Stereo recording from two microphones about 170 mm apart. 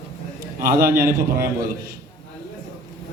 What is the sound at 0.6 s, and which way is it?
Speech, 60° right (ahead or behind).